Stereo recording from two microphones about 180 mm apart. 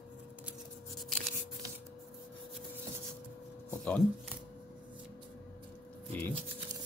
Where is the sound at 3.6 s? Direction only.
10° left (ahead or behind).